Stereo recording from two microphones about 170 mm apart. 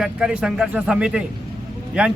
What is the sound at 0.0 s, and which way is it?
Speech, 5° right (ahead or behind).